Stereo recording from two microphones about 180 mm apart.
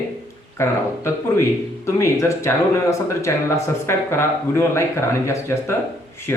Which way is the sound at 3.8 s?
15° left (ahead or behind).